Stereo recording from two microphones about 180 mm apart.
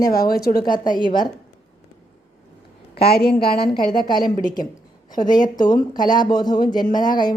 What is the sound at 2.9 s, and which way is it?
Speech, 60° left (ahead or behind).